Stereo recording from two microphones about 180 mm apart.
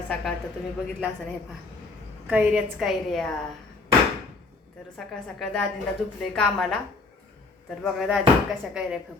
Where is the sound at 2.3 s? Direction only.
5° right (ahead or behind).